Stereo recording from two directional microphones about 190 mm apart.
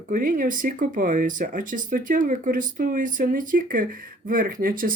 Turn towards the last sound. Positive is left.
turn(degrees=-50)  # may be behind; listen again after turning